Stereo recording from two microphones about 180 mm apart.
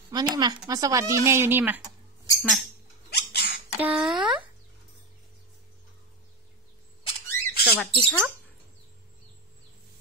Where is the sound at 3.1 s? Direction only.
65° left (ahead or behind).